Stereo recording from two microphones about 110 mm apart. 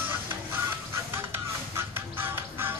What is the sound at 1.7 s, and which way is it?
Music, 20° right (ahead or behind).